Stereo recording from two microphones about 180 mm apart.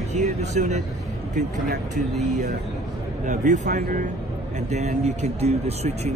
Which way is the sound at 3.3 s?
40° right (ahead or behind).